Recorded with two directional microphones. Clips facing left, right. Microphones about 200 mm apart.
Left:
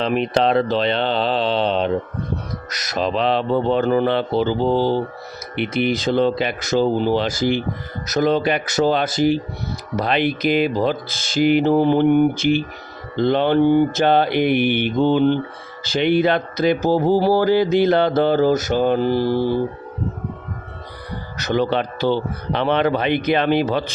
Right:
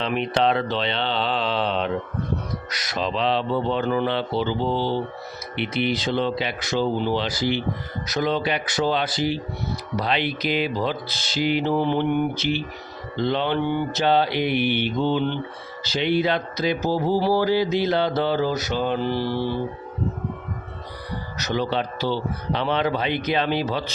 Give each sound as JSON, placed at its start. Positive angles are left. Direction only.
{"t": 0.0, "sound": "speech", "side_deg": 40}
{"t": 21.3, "sound": "speech", "side_deg": 55}